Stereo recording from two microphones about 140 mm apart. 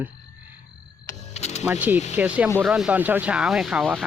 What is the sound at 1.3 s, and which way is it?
Music, 50° left (ahead or behind).